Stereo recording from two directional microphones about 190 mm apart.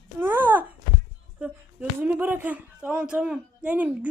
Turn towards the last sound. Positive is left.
turn(degrees=-10)  # may be behind; listen again after turning